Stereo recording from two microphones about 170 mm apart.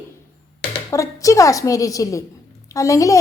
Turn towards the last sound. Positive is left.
turn(degrees=20)  # may be behind; listen again after turning